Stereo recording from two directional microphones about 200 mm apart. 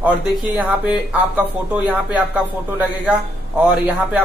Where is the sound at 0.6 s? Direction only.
5° right (ahead or behind).